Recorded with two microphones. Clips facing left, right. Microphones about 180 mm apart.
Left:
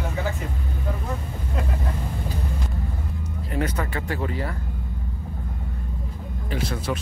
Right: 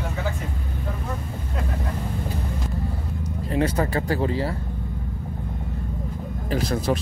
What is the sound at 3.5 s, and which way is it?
Speech, 30° right (ahead or behind).